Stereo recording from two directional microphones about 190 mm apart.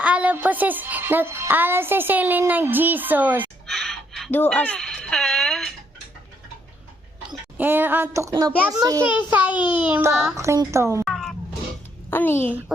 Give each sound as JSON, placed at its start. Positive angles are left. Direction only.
{"t": 0.0, "sound": "speech", "side_deg": -5}
{"t": 7.6, "sound": "a child's voice", "side_deg": -10}
{"t": 9.3, "sound": "speech", "side_deg": -5}
{"t": 9.6, "sound": "a sound", "side_deg": -5}
{"t": 10.3, "sound": "speech", "side_deg": -15}
{"t": 11.0, "sound": "cat", "side_deg": 0}
{"t": 12.1, "sound": "a woman's voice", "side_deg": 10}